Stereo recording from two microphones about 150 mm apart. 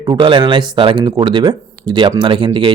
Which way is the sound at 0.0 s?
30° right (ahead or behind).